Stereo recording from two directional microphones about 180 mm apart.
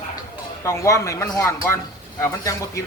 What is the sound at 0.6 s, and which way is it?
Speech, 15° left (ahead or behind).